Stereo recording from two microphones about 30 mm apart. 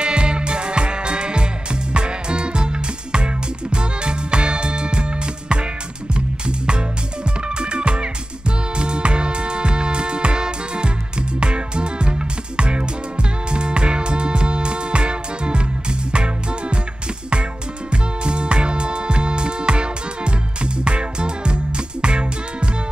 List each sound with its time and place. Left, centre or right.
0.0 s music: right
6.1 s music: right
18.2 s music: right